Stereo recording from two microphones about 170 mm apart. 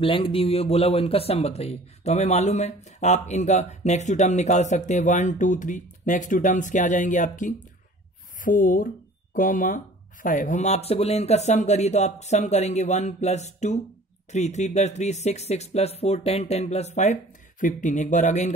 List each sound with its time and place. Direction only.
0.0 s speech: 30° left (ahead or behind)